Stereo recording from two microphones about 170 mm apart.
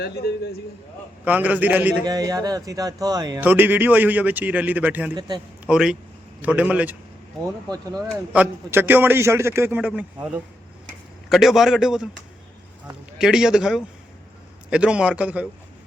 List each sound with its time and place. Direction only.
0.0 s a man's voice: 70° left (ahead or behind)
1.2 s a man's voice: 10° right (ahead or behind)
2.0 s speech: 20° right (ahead or behind)
3.4 s a man's voice: 10° right (ahead or behind)
7.7 s speech: 20° right (ahead or behind)
8.3 s a man's voice: 10° right (ahead or behind)
11.3 s speech: centre (ahead or behind)
13.1 s a man's voice: 5° right (ahead or behind)